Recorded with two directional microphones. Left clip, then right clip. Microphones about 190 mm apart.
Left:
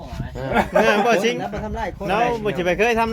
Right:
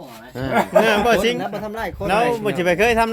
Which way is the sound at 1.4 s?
60° right (ahead or behind).